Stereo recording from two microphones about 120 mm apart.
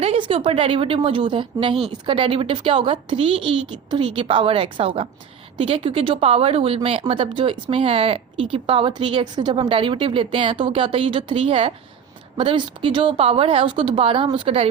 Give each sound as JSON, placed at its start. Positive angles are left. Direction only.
{"t": 0.2, "sound": "speech", "side_deg": -45}